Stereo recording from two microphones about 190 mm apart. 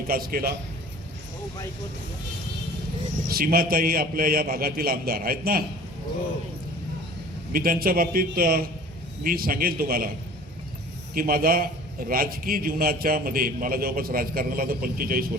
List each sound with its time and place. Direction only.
0.1 s a man's voice: 50° right (ahead or behind)
3.2 s a man's voice: 50° right (ahead or behind)
7.5 s a man's voice: 50° right (ahead or behind)
11.1 s a man's voice: 50° right (ahead or behind)